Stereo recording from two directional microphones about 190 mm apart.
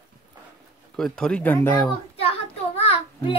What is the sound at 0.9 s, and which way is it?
Speech, 5° left (ahead or behind).